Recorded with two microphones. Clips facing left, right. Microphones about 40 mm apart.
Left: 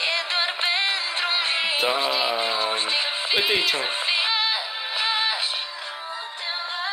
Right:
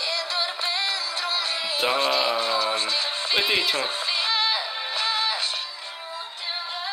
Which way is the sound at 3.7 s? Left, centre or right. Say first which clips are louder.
Left 2 dB; left.